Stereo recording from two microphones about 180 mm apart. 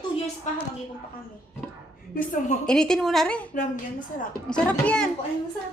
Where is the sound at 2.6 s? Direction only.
5° left (ahead or behind).